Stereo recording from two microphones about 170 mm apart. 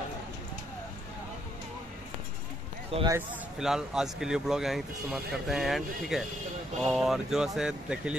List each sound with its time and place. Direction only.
2.9 s speech: 35° right (ahead or behind)
3.5 s speech: centre (ahead or behind)